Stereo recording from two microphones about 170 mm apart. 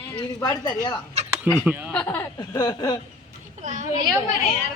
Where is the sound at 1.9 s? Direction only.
10° left (ahead or behind).